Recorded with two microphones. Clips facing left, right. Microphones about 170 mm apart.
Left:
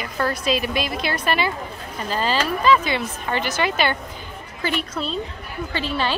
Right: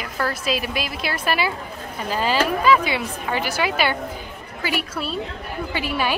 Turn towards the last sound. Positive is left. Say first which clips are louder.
# even
turn(degrees=-10)  # may be behind; listen again after turning